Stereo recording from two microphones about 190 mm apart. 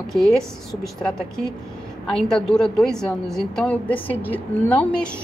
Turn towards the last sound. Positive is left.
turn(degrees=5)  # may be behind; listen again after turning